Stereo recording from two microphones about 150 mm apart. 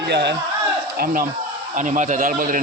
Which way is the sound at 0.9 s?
85° right.